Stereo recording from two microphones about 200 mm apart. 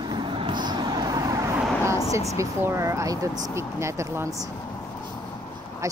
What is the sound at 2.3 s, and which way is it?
Speech, 15° right (ahead or behind).